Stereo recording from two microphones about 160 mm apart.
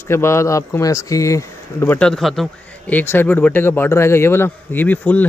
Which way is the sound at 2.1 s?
Centre (ahead or behind).